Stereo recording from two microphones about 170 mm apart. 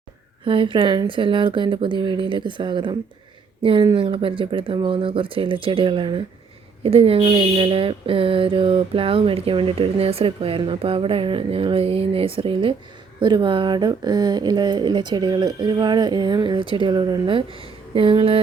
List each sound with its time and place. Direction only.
0.4 s speech: 30° right (ahead or behind)